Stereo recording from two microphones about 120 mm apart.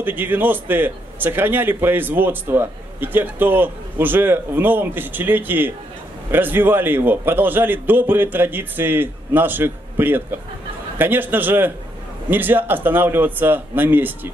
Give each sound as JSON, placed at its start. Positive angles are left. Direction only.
{"t": 0.0, "sound": "a man's voice", "side_deg": -15}